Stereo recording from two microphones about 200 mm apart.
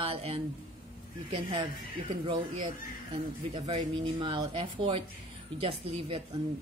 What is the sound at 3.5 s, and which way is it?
Speech, 25° right (ahead or behind).